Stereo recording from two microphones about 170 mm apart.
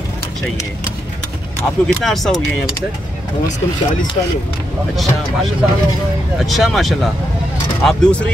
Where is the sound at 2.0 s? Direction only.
Centre (ahead or behind).